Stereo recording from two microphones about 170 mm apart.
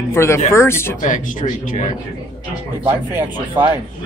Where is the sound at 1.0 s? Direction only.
50° left (ahead or behind).